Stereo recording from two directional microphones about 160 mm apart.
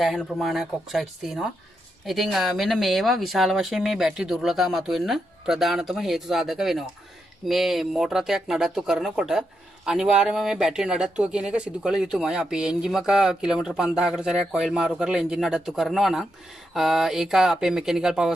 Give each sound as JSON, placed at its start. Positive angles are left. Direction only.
{"t": 0.0, "sound": "speech", "side_deg": 0}